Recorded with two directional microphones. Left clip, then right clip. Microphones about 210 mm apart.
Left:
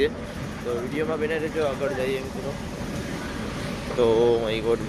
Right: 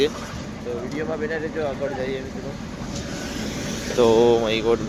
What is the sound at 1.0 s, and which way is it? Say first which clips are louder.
Speech: even; 10° left (ahead or behind).